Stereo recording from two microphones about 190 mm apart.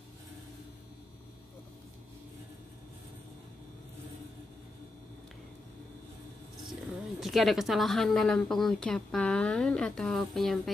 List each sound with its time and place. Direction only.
7.2 s a woman's voice: centre (ahead or behind)